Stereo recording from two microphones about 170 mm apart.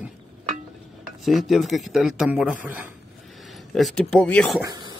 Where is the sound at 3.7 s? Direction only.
Centre (ahead or behind).